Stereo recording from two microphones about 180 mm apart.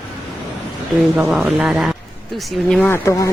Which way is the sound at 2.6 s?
10° left (ahead or behind).